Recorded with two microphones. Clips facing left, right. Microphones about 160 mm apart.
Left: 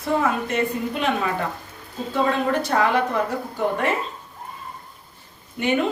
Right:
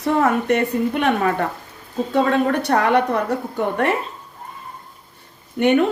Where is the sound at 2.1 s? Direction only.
65° right (ahead or behind).